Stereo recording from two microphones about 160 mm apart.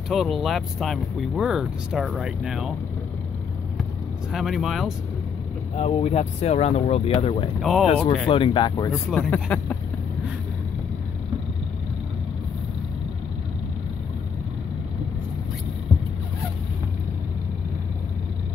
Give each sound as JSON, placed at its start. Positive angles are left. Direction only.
{"t": 0.1, "sound": "speech", "side_deg": 0}
{"t": 4.3, "sound": "speech", "side_deg": 0}
{"t": 5.8, "sound": "speech", "side_deg": 40}
{"t": 9.3, "sound": "speech", "side_deg": 10}